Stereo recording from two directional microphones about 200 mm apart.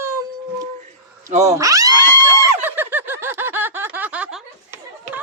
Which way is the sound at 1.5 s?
15° right (ahead or behind).